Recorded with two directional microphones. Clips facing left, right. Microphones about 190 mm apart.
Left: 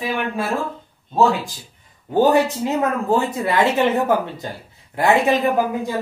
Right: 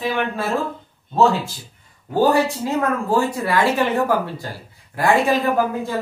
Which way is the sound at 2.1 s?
20° left (ahead or behind).